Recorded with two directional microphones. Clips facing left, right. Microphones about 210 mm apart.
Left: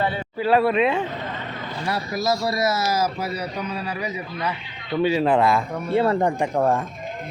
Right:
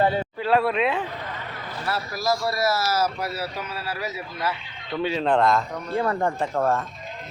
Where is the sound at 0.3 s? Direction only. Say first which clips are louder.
Left 6 dB; centre (ahead or behind).